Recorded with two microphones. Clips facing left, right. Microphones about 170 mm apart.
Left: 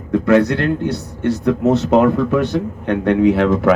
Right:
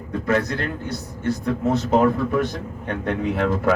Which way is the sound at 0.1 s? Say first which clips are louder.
Left 9 dB; 75° left (ahead or behind).